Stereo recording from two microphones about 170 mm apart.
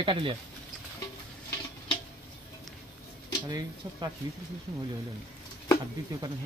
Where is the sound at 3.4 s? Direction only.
20° right (ahead or behind).